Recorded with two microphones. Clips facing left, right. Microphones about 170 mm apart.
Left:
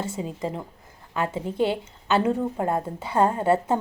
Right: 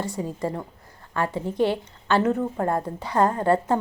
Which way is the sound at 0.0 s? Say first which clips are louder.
Right 1 dB; 25° left (ahead or behind).